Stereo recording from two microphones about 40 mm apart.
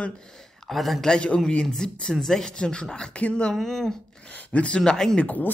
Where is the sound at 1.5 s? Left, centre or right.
Centre.